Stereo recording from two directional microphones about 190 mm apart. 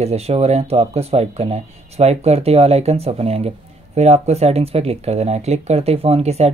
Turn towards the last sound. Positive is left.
turn(degrees=-35)  # may be behind; listen again after turning